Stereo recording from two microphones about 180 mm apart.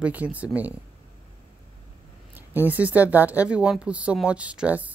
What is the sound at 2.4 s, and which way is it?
Speech, 10° right (ahead or behind).